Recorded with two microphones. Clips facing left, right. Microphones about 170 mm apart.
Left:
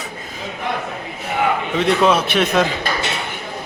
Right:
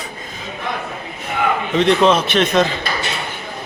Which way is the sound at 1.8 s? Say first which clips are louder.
Right 2 dB; 10° left (ahead or behind).